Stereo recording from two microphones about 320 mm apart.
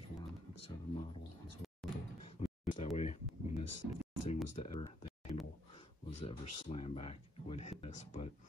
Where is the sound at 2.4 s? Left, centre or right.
Left.